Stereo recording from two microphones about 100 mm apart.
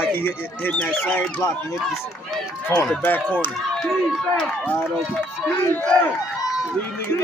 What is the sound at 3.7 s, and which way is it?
Speech, 5° left (ahead or behind).